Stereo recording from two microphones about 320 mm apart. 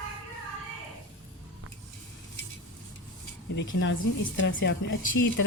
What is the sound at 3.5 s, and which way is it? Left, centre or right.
A woman's voice, left.